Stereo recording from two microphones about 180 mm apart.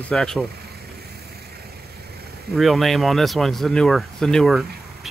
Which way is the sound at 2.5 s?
Centre (ahead or behind).